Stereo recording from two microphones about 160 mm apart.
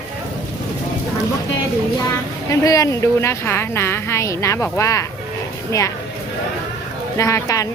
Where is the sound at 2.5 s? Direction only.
20° left (ahead or behind).